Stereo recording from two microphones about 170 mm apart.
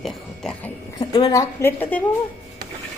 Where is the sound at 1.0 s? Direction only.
25° left (ahead or behind).